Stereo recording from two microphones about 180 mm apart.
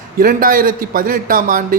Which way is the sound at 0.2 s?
50° right (ahead or behind).